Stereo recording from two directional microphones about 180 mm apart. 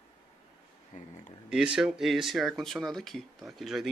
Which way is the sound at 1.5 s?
5° right (ahead or behind).